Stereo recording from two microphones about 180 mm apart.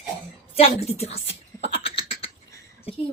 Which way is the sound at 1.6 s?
30° left (ahead or behind).